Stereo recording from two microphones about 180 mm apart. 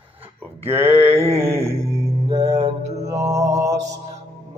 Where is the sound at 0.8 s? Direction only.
35° right (ahead or behind).